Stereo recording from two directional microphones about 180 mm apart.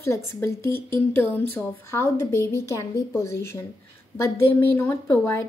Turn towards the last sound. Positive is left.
turn(degrees=15)  # may be behind; listen again after turning